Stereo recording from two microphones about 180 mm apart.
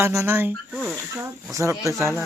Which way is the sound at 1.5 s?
15° right (ahead or behind).